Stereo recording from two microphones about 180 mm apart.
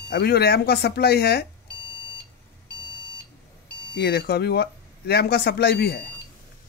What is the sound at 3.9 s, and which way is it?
Speech, 65° left (ahead or behind).